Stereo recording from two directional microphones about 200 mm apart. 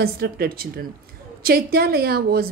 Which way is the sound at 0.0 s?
50° right (ahead or behind).